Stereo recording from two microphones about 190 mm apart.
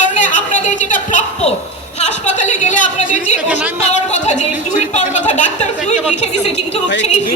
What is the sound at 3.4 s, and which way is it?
Speech, 10° right (ahead or behind).